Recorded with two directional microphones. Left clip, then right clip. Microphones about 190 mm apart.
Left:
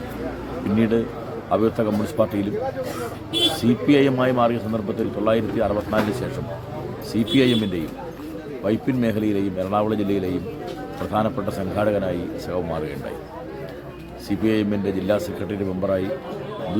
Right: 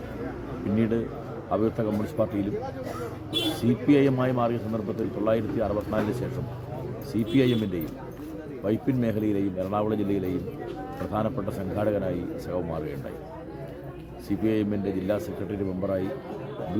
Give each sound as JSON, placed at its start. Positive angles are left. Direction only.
{"t": 0.8, "sound": "speech", "side_deg": 0}
{"t": 3.6, "sound": "speech", "side_deg": 0}
{"t": 14.3, "sound": "speech", "side_deg": 5}